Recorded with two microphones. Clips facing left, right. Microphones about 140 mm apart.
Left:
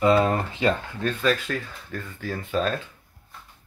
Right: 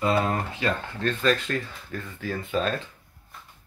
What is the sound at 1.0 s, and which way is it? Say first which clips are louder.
Speech: even; 5° left (ahead or behind).